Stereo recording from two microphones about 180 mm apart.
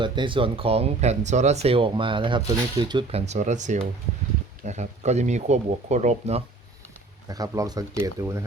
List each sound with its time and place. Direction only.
0.0 s speech: 25° right (ahead or behind)
7.3 s speech: 20° right (ahead or behind)